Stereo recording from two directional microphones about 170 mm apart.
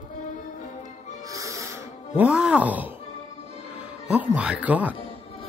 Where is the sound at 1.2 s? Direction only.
20° right (ahead or behind).